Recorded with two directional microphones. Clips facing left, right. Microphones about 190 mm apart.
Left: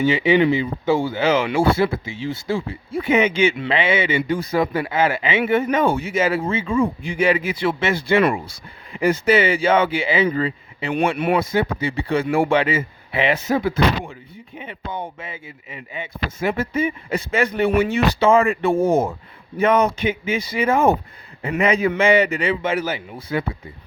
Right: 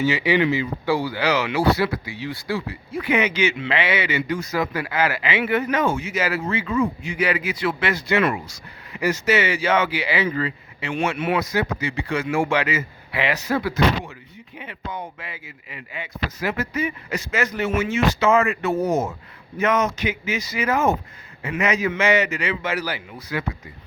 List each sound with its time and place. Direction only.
0.1 s a man's voice: 25° left (ahead or behind)
17.7 s speech: 60° left (ahead or behind)
18.2 s a man's voice: 30° left (ahead or behind)